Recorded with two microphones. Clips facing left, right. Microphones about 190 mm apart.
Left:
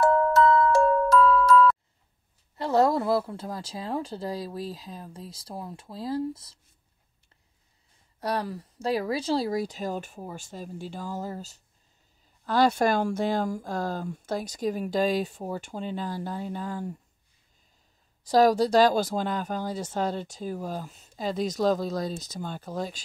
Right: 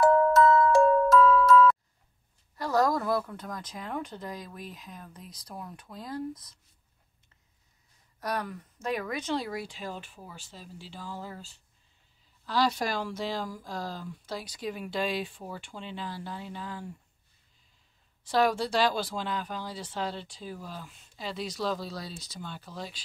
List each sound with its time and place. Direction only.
0.0 s glockenspiel: centre (ahead or behind)
2.5 s speech: 25° left (ahead or behind)
8.2 s speech: 30° left (ahead or behind); by 16.9 s 45° left (ahead or behind)
18.2 s speech: 40° left (ahead or behind)